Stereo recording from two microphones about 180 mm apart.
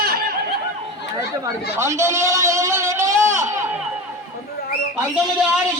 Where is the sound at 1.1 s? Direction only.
15° right (ahead or behind).